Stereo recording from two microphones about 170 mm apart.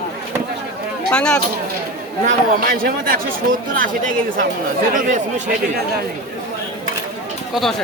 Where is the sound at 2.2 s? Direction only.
60° right (ahead or behind).